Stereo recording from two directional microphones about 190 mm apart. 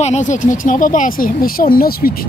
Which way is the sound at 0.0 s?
40° left (ahead or behind).